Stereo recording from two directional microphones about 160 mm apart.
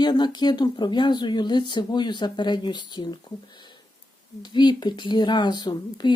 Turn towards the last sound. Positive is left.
turn(degrees=25)  # may be behind; listen again after turning